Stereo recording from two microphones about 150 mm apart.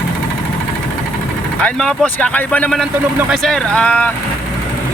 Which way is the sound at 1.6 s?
5° left (ahead or behind).